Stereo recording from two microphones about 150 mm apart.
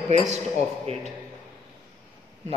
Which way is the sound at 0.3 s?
45° right (ahead or behind).